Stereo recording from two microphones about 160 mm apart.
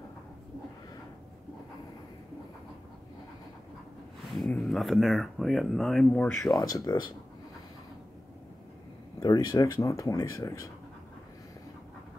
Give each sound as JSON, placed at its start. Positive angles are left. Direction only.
{"t": 4.3, "sound": "speech", "side_deg": 0}
{"t": 6.7, "sound": "speech", "side_deg": 25}
{"t": 9.2, "sound": "speech", "side_deg": 25}